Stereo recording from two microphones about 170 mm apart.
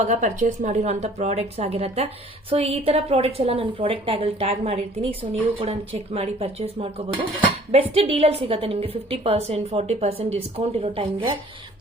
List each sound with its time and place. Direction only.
0.0 s a woman's voice: 45° right (ahead or behind)